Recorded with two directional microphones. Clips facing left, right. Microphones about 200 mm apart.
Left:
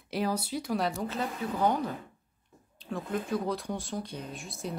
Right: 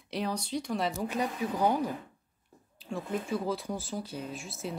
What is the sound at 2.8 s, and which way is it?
Speech, centre (ahead or behind).